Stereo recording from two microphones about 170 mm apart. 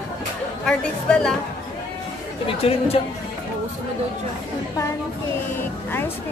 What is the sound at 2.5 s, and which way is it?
Speech, 35° left (ahead or behind).